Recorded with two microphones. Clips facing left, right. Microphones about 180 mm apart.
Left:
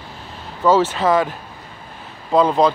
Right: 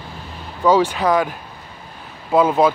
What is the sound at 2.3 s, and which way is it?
Speech, 5° right (ahead or behind).